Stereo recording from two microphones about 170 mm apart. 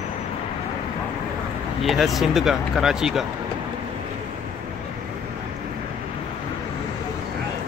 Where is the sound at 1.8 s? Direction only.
Centre (ahead or behind).